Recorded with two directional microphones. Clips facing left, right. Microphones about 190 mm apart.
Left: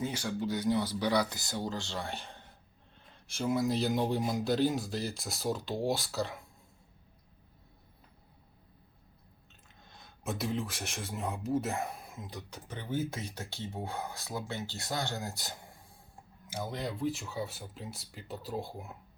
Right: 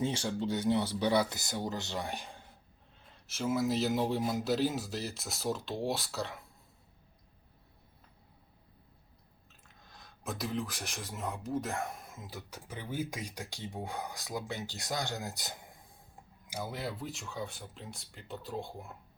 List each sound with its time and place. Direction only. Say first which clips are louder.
0.0 s speech: right 1 dB; 25° right (ahead or behind); by 6.4 s centre (ahead or behind)
9.8 s speech: left 3 dB; centre (ahead or behind)